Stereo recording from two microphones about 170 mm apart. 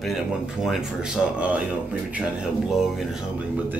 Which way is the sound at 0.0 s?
Centre (ahead or behind).